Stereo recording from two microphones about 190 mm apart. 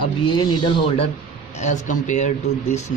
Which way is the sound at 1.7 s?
40° left (ahead or behind).